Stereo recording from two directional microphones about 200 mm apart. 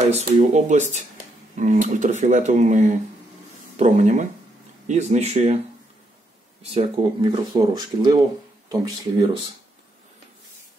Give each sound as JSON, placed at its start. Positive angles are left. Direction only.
{"t": 0.1, "sound": "speech", "side_deg": -35}
{"t": 6.7, "sound": "speech", "side_deg": -30}